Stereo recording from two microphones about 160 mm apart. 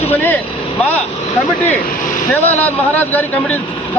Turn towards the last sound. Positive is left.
turn(degrees=10)  # may be behind; listen again after turning